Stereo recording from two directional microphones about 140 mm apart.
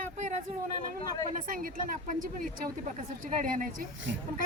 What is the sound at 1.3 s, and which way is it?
Speech, 75° right (ahead or behind).